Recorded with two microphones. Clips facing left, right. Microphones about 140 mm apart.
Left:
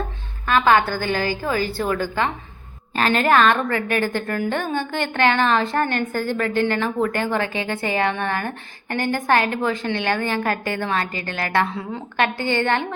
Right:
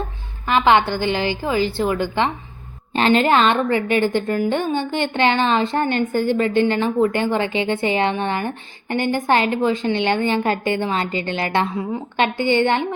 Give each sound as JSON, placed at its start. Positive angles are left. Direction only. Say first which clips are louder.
{"t": 0.4, "sound": "a woman's voice", "louder": "right 1 dB", "side_deg": -20}